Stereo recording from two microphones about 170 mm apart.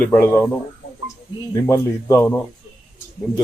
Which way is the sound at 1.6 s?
15° left (ahead or behind).